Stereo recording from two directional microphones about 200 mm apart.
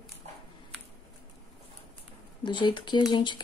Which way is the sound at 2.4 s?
25° left (ahead or behind).